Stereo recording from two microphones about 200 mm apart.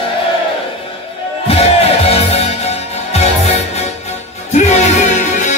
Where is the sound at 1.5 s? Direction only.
30° left (ahead or behind).